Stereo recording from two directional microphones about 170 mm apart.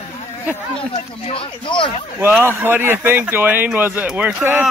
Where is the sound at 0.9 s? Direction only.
35° left (ahead or behind).